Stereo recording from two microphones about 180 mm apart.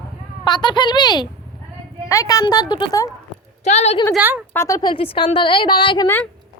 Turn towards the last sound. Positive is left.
turn(degrees=25)  # may be behind; listen again after turning